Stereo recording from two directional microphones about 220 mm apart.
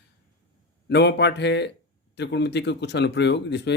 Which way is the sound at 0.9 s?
50° left (ahead or behind).